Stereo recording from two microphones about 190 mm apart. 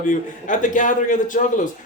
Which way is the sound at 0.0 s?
45° left (ahead or behind).